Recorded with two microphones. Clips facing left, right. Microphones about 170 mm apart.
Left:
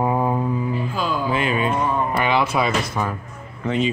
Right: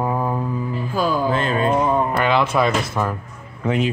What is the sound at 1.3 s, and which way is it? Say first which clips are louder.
Mantra: right 1 dB; 10° left (ahead or behind).